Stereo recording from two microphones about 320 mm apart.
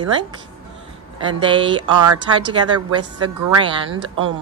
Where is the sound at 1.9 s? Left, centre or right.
Right.